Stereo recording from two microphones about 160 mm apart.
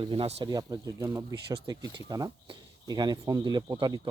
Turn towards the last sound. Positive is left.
turn(degrees=-25)  # may be behind; listen again after turning